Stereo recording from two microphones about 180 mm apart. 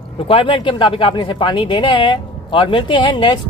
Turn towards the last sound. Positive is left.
turn(degrees=25)  # may be behind; listen again after turning